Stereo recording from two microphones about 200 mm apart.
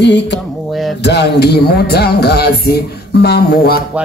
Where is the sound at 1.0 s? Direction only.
55° left (ahead or behind).